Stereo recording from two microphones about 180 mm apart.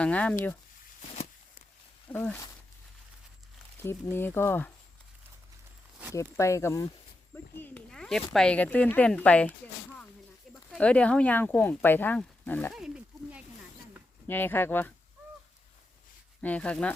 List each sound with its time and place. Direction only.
0.0 s speech: 5° left (ahead or behind)
2.0 s speech: 10° left (ahead or behind)
3.8 s speech: 10° left (ahead or behind)
6.1 s speech: 15° left (ahead or behind)
10.5 s speech: 5° left (ahead or behind)
12.7 s a sound: 5° right (ahead or behind)
14.3 s speech: 10° left (ahead or behind)
16.4 s speech: 5° left (ahead or behind)